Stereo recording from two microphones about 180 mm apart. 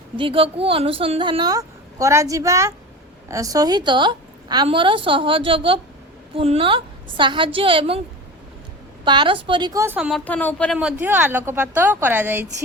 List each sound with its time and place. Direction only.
0.2 s a woman's voice: 30° right (ahead or behind)
9.0 s a woman's voice: 25° right (ahead or behind); by 10.8 s 5° left (ahead or behind)
10.8 s a woman's voice: 10° right (ahead or behind)